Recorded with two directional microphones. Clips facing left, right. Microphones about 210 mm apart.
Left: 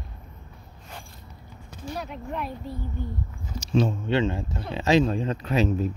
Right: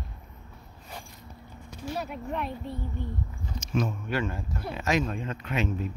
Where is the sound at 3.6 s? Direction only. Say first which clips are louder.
Left 6 dB; 30° left (ahead or behind).